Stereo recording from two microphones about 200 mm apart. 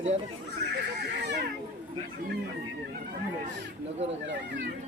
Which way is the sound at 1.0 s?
55° right (ahead or behind).